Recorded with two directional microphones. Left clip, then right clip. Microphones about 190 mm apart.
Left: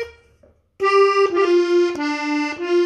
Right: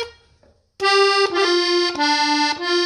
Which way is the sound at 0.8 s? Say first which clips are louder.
Left 1 dB; 25° right (ahead or behind).